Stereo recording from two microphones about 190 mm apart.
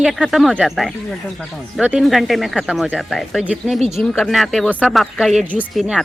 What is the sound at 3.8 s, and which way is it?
Speech, 35° right (ahead or behind).